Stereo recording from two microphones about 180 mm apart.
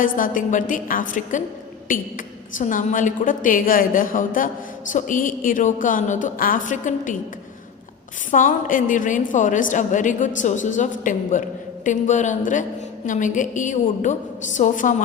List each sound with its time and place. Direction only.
0.0 s a woman's voice: 50° left (ahead or behind)
8.3 s a woman's voice: 45° left (ahead or behind)